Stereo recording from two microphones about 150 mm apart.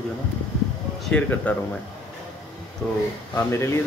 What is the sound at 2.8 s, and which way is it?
Speech, 10° left (ahead or behind).